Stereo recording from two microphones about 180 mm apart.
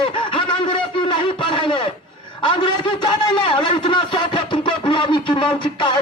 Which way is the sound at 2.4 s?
25° left (ahead or behind).